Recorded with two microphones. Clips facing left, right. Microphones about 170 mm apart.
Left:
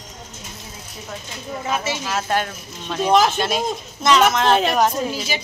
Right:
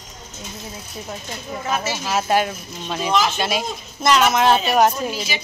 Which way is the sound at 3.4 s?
5° right (ahead or behind).